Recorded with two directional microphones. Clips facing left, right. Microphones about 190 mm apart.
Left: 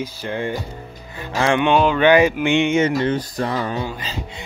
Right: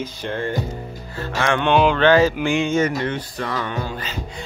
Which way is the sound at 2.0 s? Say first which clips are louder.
Left 1 dB; 15° left (ahead or behind).